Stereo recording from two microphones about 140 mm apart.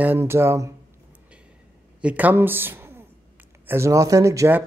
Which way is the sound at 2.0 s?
10° right (ahead or behind).